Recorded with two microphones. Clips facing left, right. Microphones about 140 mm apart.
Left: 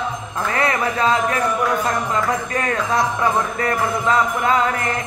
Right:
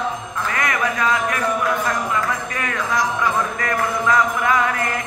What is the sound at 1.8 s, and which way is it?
Music, 35° left (ahead or behind).